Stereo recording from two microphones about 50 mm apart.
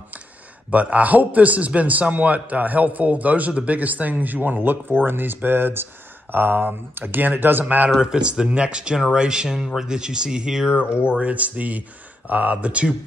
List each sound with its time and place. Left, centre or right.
0.7 s a man's voice: right
8.0 s speech: centre
11.1 s speech: right